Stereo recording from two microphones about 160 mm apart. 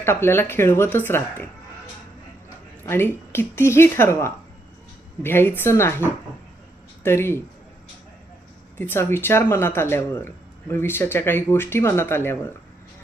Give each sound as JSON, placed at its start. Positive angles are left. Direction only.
{"t": 0.0, "sound": "speech", "side_deg": 15}
{"t": 2.8, "sound": "speech", "side_deg": 15}
{"t": 8.8, "sound": "speech", "side_deg": 15}